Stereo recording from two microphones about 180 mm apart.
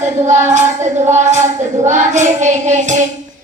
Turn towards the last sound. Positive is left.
turn(degrees=-40)  # may be behind; listen again after turning